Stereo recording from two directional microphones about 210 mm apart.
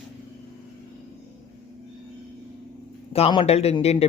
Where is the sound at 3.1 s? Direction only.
30° left (ahead or behind).